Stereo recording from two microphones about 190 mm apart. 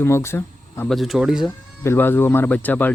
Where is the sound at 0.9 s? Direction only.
Centre (ahead or behind).